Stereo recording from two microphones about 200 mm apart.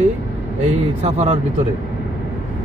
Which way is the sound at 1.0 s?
30° right (ahead or behind).